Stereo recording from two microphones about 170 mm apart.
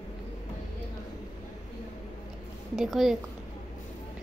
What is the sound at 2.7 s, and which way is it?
Speech, centre (ahead or behind).